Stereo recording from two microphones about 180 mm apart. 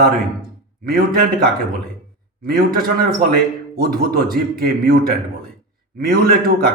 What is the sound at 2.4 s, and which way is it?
A man's voice, 55° right (ahead or behind).